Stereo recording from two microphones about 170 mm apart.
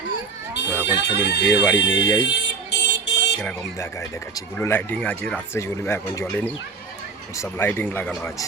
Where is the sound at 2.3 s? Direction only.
90° left.